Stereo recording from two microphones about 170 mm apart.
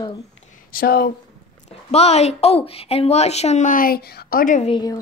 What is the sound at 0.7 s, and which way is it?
Speech, 65° left (ahead or behind).